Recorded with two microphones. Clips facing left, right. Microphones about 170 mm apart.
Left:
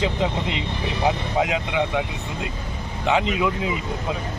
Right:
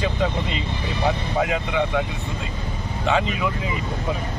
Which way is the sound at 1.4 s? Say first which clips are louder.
Even; 15° left (ahead or behind).